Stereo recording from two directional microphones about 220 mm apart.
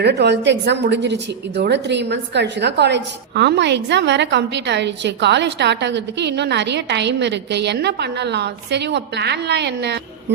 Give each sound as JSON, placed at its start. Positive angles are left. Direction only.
{"t": 0.0, "sound": "a woman's voice", "side_deg": -50}